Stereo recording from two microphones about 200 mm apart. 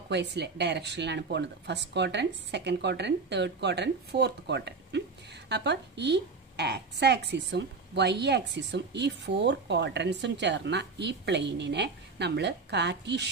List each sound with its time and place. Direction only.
0.1 s a woman's voice: 60° right (ahead or behind)